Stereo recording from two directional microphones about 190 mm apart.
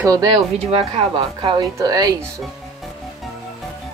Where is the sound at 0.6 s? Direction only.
30° right (ahead or behind).